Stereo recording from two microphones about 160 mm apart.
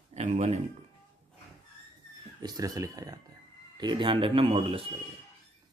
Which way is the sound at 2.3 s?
25° right (ahead or behind).